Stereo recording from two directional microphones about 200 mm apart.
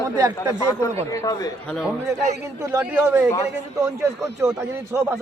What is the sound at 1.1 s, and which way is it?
Speech, 15° left (ahead or behind).